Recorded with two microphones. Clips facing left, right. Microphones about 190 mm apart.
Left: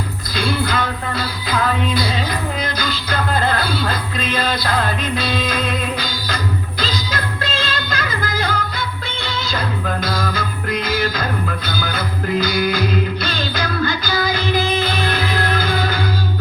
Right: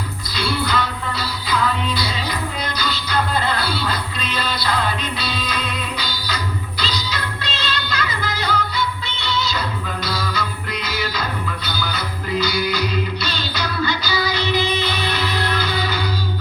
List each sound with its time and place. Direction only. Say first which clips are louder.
0.3 s music: left 2 dB; 50° left (ahead or behind)